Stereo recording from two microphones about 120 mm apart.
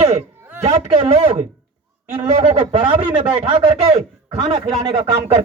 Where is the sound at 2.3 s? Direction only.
70° right (ahead or behind).